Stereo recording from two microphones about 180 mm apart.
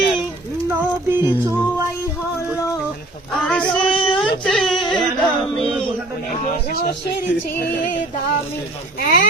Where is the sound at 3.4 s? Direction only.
5° left (ahead or behind).